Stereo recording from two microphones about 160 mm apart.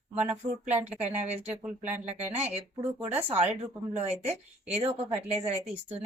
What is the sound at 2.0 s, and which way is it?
Speech, 40° right (ahead or behind).